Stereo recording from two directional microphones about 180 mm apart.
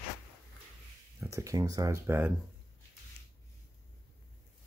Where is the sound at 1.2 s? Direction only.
15° right (ahead or behind).